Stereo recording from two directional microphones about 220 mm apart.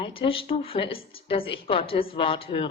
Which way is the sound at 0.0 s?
25° left (ahead or behind).